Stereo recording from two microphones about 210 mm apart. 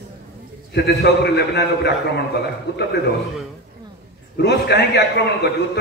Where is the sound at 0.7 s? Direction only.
50° left (ahead or behind).